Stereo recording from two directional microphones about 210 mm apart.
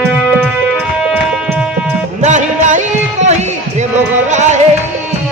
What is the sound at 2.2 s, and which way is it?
Music, 35° right (ahead or behind).